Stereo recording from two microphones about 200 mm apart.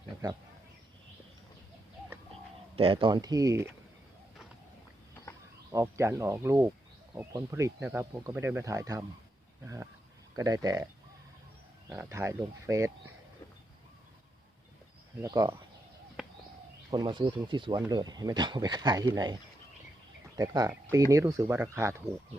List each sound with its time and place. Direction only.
2.7 s speech: 25° right (ahead or behind)
5.7 s speech: 15° right (ahead or behind)
11.9 s speech: 15° right (ahead or behind)
15.2 s speech: 15° right (ahead or behind)
16.2 s bird: 5° right (ahead or behind)
16.9 s speech: 20° right (ahead or behind)